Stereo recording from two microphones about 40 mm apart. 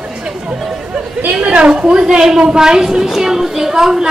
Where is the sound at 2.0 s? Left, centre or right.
Centre.